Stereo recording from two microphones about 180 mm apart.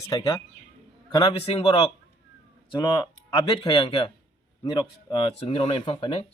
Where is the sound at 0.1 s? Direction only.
25° left (ahead or behind).